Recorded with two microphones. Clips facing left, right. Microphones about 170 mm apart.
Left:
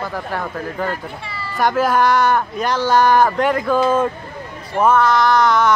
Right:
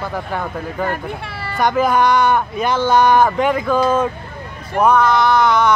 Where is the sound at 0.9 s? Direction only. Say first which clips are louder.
Right 3 dB; 60° right (ahead or behind).